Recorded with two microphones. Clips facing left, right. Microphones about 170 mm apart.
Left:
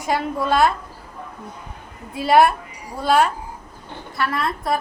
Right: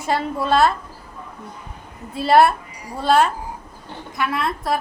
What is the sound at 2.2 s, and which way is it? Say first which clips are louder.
A woman's voice: right 1 dB; centre (ahead or behind).